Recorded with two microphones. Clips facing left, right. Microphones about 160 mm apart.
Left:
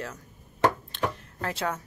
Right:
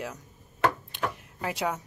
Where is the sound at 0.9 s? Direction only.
10° right (ahead or behind).